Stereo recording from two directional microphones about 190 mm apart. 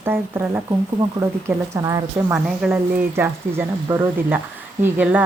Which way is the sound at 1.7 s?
15° right (ahead or behind).